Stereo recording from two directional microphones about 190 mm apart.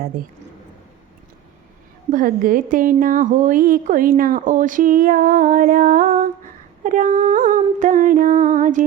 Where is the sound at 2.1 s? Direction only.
45° right (ahead or behind).